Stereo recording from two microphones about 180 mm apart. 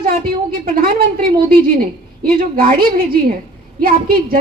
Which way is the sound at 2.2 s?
55° right (ahead or behind).